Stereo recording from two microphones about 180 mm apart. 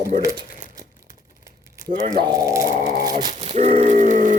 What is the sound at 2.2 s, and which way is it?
Speech, 20° right (ahead or behind).